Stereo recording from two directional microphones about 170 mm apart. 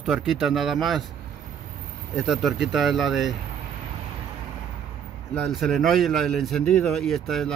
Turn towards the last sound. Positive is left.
turn(degrees=0)  # may be behind; listen again after turning